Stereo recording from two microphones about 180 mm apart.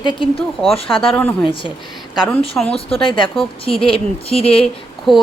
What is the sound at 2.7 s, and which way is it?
Speech, 30° left (ahead or behind).